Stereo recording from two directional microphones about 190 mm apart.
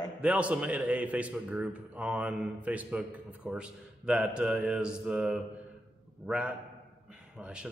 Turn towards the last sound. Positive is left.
turn(degrees=-5)  # may be behind; listen again after turning